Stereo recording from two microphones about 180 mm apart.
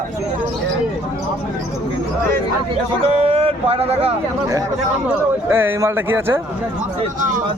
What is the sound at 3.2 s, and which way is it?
Speech, 35° right (ahead or behind).